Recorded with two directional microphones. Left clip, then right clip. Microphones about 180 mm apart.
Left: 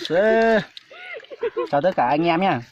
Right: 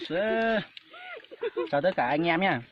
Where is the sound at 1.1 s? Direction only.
60° right (ahead or behind).